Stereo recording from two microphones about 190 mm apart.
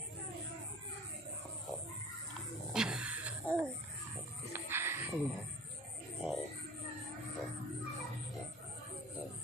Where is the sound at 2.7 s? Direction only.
5° right (ahead or behind).